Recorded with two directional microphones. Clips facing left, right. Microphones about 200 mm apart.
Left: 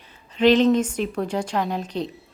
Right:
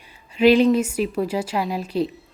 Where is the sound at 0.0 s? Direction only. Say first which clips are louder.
Right 2 dB; 10° right (ahead or behind).